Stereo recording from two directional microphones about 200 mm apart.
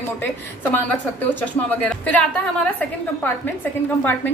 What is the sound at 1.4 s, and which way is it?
Speech, 5° left (ahead or behind).